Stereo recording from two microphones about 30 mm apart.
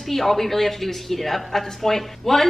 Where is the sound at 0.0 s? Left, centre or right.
Centre.